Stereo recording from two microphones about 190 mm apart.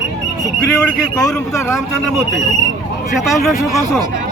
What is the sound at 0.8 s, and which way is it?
Speech, 5° left (ahead or behind).